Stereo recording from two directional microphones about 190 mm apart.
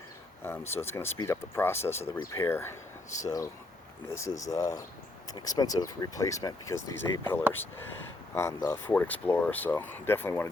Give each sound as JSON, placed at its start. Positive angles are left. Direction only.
{"t": 0.4, "sound": "speech", "side_deg": 10}
{"t": 3.1, "sound": "speech", "side_deg": 40}
{"t": 4.1, "sound": "speech", "side_deg": 15}